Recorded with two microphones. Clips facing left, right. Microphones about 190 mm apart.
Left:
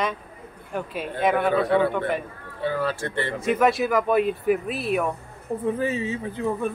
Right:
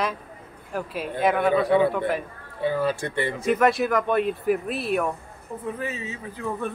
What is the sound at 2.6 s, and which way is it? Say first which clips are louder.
Speech: right 2 dB; 15° right (ahead or behind).